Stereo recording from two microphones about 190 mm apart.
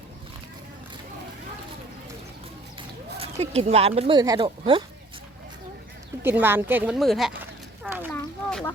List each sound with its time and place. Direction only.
3.2 s speech: 30° right (ahead or behind)
6.2 s speech: 10° right (ahead or behind)
8.1 s a sound: 10° left (ahead or behind)